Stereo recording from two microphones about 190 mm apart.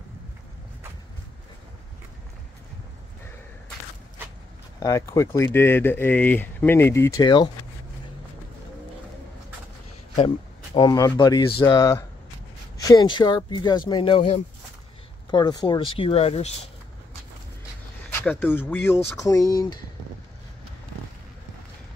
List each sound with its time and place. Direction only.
4.7 s speech: 15° left (ahead or behind)
10.1 s speech: 30° left (ahead or behind)
15.3 s speech: 20° left (ahead or behind)
18.2 s speech: 10° left (ahead or behind)